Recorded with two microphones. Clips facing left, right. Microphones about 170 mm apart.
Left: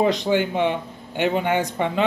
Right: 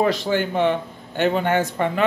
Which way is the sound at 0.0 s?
20° left (ahead or behind).